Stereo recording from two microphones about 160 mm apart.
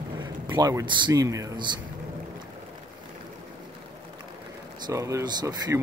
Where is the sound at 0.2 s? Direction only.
25° right (ahead or behind).